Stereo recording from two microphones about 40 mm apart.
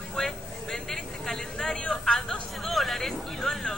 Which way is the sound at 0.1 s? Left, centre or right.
Centre.